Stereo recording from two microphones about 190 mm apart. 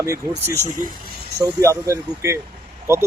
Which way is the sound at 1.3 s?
15° right (ahead or behind).